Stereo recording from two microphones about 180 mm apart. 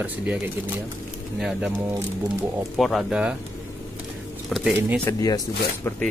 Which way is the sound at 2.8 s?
Centre (ahead or behind).